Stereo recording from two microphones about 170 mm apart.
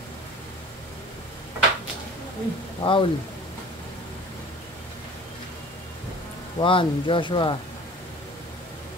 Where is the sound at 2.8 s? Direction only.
30° left (ahead or behind).